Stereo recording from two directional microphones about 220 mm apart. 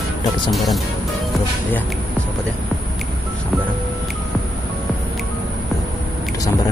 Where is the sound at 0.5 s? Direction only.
Centre (ahead or behind).